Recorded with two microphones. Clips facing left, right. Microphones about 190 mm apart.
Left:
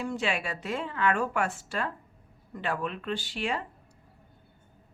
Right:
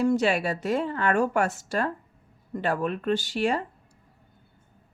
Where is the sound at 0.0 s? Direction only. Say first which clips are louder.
Right 8 dB; 40° right (ahead or behind).